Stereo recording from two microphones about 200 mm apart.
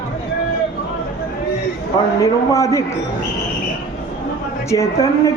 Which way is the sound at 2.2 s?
15° left (ahead or behind).